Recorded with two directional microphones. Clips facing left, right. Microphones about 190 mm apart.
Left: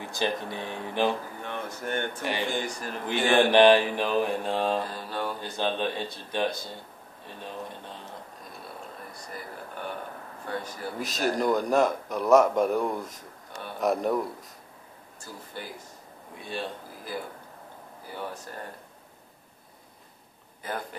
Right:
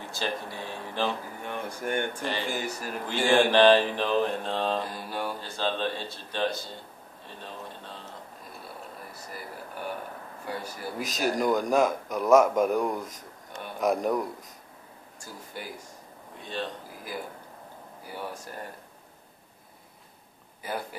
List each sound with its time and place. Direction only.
0.0 s mantra: 15° left (ahead or behind)
1.4 s speech: 10° right (ahead or behind)
3.1 s mantra: 20° left (ahead or behind)
4.8 s speech: 10° right (ahead or behind)
5.4 s mantra: 15° left (ahead or behind)
8.6 s a sound: 5° right (ahead or behind)
10.4 s a man's voice: 10° right (ahead or behind)
15.1 s speech: 10° right (ahead or behind)
16.3 s mantra: 10° left (ahead or behind)
20.6 s speech: 10° right (ahead or behind)